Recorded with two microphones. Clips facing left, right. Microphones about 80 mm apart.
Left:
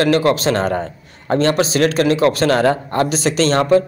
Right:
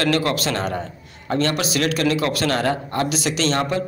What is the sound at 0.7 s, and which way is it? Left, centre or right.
A man's voice, left.